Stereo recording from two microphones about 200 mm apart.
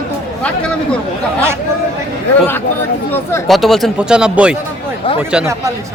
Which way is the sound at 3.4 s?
Centre (ahead or behind).